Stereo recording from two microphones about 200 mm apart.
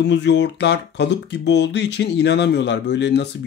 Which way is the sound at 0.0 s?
60° left (ahead or behind).